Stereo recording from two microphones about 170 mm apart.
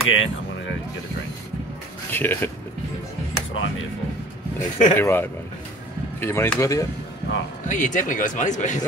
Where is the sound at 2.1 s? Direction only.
10° left (ahead or behind).